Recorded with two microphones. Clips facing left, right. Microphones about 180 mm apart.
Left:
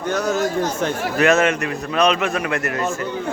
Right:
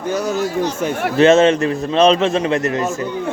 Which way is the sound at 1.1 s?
25° right (ahead or behind).